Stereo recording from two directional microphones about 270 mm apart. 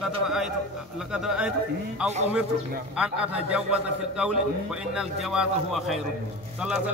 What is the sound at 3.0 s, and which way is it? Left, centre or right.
Speech, centre.